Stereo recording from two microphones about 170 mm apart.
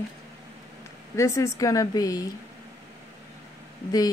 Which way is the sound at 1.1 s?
15° left (ahead or behind).